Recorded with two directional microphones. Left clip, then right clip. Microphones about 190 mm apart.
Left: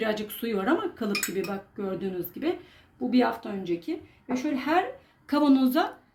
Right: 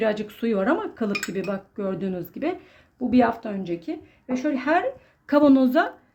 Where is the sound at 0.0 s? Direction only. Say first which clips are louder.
Right 5 dB; 45° right (ahead or behind).